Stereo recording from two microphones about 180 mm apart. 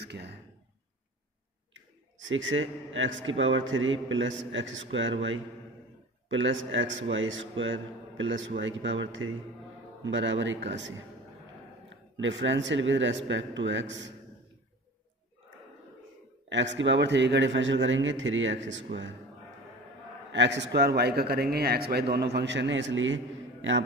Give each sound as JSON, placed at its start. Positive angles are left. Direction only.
{"t": 0.0, "sound": "speech", "side_deg": -70}
{"t": 2.2, "sound": "a man's voice", "side_deg": -90}
{"t": 12.2, "sound": "a man's voice", "side_deg": -90}
{"t": 16.4, "sound": "a man's voice", "side_deg": -80}
{"t": 20.2, "sound": "a man's voice", "side_deg": -80}